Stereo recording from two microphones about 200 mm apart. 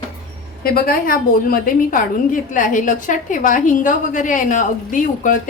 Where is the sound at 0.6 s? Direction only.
50° left (ahead or behind).